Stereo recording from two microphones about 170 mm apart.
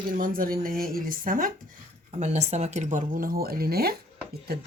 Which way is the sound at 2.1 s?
40° right (ahead or behind).